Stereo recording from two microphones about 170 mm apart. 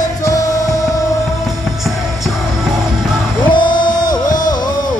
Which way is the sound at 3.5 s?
25° left (ahead or behind).